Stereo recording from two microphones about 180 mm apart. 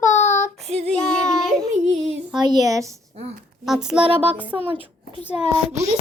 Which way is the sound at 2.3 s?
25° right (ahead or behind).